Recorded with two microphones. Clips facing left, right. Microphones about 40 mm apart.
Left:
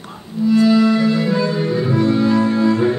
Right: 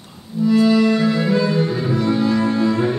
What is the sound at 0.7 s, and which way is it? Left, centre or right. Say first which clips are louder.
Music: left 2 dB; centre.